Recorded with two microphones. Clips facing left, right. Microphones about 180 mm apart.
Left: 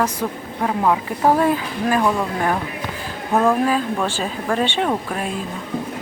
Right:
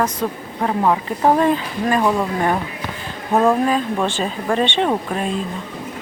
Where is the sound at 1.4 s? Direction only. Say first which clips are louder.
Right 1 dB; 5° left (ahead or behind).